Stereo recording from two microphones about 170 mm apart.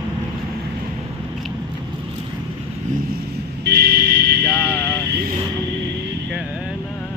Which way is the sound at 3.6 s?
65° right (ahead or behind).